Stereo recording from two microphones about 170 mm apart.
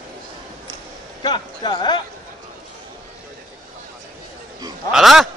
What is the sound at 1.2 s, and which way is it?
Speech, 25° left (ahead or behind).